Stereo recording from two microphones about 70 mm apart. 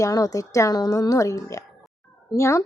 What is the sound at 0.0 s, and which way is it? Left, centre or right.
A woman's voice, left.